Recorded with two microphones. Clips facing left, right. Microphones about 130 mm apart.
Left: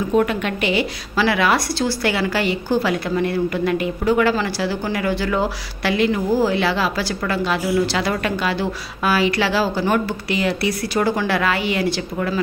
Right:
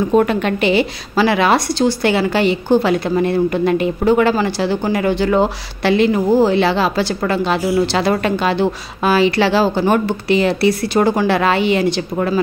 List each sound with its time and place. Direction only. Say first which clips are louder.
0.1 s a woman's voice: right 2 dB; 35° right (ahead or behind)